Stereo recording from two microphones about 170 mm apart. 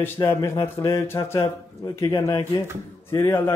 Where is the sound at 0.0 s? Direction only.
15° left (ahead or behind).